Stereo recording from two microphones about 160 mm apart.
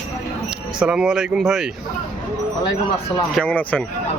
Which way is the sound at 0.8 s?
5° right (ahead or behind).